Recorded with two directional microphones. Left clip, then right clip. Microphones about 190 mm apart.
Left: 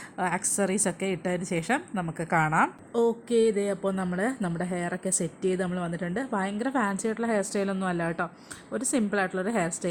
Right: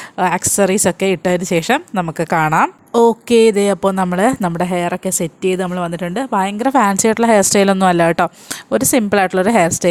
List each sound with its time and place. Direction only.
0.2 s a woman's voice: 40° right (ahead or behind)